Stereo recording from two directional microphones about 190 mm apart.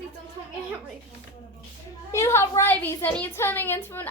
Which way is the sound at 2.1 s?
15° left (ahead or behind).